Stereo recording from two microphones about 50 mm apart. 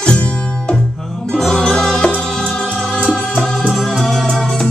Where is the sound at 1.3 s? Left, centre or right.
Centre.